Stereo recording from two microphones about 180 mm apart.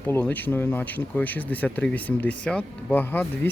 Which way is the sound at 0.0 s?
10° left (ahead or behind).